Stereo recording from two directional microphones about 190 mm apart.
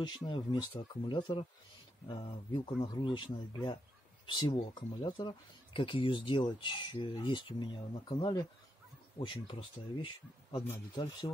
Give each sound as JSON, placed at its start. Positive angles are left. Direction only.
{"t": 0.0, "sound": "speech", "side_deg": 25}